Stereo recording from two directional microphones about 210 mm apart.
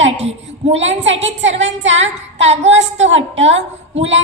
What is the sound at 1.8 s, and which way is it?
Speech, 60° right (ahead or behind).